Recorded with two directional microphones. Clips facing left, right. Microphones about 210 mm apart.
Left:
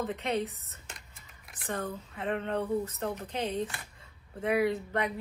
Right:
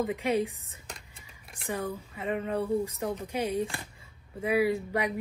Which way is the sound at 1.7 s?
10° right (ahead or behind).